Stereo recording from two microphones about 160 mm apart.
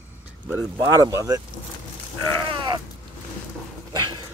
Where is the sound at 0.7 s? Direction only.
25° right (ahead or behind).